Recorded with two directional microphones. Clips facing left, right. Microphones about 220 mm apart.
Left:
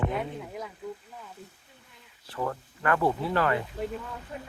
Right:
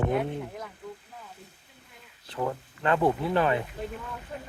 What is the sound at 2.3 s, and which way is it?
Speech, 15° right (ahead or behind).